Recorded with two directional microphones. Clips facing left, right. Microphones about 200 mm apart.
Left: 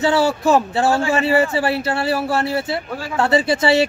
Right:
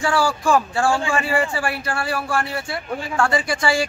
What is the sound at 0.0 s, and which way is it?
Speech, 20° left (ahead or behind).